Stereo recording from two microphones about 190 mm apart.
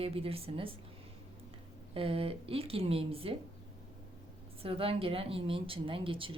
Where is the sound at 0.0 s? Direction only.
30° right (ahead or behind).